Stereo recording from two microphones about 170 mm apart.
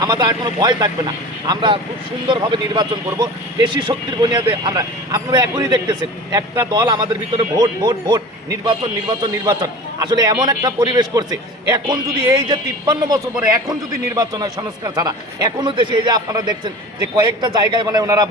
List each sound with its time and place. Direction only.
0.0 s a man's voice: 25° right (ahead or behind)